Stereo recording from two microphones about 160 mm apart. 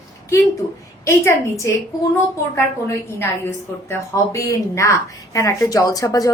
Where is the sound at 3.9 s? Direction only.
20° left (ahead or behind).